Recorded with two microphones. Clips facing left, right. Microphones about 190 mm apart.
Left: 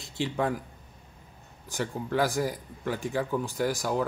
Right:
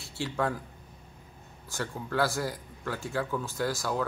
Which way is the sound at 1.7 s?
15° left (ahead or behind).